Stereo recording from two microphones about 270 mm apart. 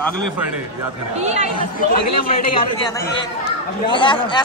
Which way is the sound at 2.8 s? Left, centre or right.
Centre.